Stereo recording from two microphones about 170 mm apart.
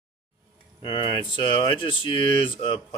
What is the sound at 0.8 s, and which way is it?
Speech, 30° left (ahead or behind).